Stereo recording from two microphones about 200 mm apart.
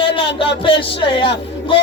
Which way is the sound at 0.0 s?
25° left (ahead or behind).